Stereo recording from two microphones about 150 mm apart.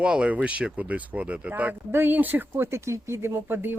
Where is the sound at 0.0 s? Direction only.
5° right (ahead or behind).